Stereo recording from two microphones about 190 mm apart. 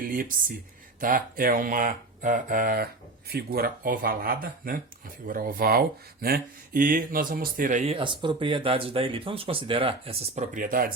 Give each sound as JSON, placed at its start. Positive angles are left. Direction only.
{"t": 0.0, "sound": "speech", "side_deg": -45}
{"t": 7.9, "sound": "speech", "side_deg": -25}